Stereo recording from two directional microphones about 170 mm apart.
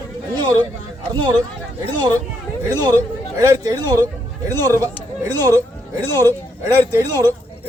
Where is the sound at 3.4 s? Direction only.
20° right (ahead or behind).